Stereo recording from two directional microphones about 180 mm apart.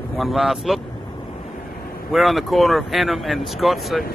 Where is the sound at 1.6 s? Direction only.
55° left (ahead or behind).